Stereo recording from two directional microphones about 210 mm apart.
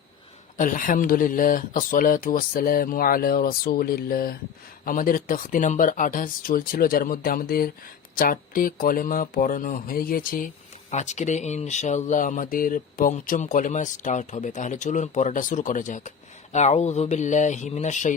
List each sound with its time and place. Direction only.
0.5 s speech: 40° left (ahead or behind)